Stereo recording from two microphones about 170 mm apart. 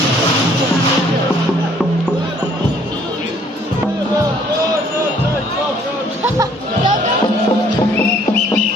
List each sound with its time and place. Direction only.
6.2 s music: 20° right (ahead or behind)